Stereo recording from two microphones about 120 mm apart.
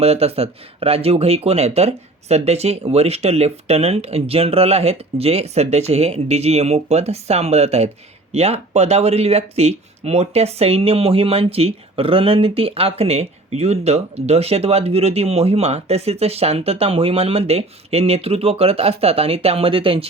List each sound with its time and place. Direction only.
0.0 s speech: 60° right (ahead or behind)